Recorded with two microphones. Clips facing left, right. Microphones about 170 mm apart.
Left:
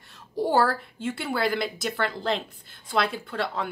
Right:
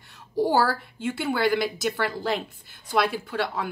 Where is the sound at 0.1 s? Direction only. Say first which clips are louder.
Right 1 dB; centre (ahead or behind).